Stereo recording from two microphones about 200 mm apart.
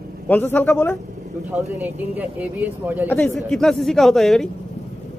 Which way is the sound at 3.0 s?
5° left (ahead or behind).